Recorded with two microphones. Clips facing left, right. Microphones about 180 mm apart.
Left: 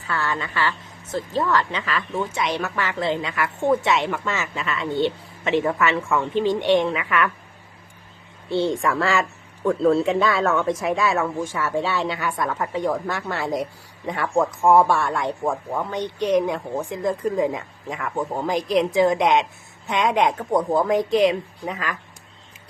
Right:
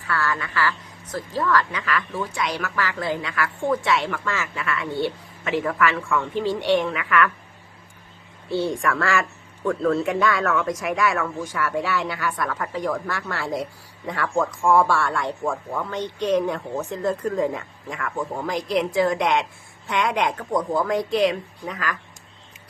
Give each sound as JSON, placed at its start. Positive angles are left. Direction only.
{"t": 0.0, "sound": "a woman's voice", "side_deg": 25}
{"t": 8.4, "sound": "a woman's voice", "side_deg": 25}